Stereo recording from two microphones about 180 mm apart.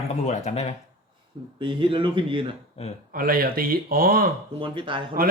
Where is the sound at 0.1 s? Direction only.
35° left (ahead or behind).